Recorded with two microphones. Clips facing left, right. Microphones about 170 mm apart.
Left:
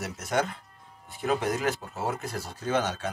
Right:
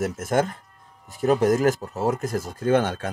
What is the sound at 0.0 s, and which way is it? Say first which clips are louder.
Speech: right 6 dB; 50° right (ahead or behind).